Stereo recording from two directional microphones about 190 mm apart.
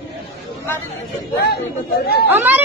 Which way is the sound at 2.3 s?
10° right (ahead or behind).